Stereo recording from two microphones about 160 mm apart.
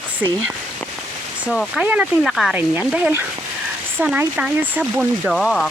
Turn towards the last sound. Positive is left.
turn(degrees=0)  # may be behind; listen again after turning